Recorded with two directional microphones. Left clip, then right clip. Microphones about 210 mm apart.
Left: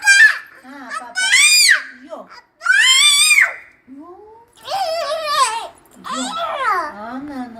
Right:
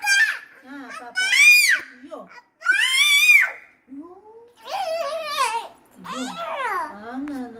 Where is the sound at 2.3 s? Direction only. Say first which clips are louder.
Left 6 dB; centre (ahead or behind).